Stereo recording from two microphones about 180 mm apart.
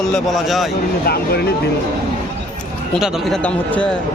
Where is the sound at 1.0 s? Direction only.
60° left (ahead or behind).